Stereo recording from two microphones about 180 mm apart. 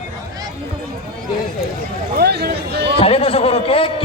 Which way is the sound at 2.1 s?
65° right (ahead or behind).